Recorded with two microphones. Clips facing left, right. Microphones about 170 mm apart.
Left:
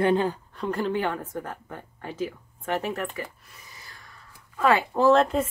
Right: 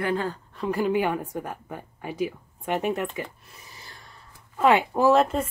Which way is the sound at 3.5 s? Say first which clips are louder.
Right 2 dB; 30° right (ahead or behind).